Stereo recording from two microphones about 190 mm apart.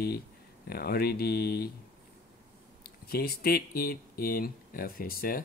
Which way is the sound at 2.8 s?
55° left (ahead or behind).